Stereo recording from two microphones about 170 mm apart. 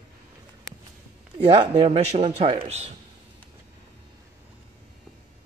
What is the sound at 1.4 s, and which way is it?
A man's voice, 30° right (ahead or behind).